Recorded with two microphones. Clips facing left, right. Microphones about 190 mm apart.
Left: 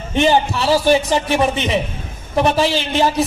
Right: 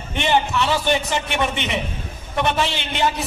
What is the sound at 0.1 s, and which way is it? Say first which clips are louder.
A man's voice: left 5 dB; 35° left (ahead or behind).